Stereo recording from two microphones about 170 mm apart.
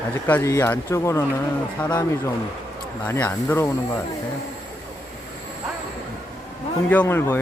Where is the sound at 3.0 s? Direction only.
15° left (ahead or behind).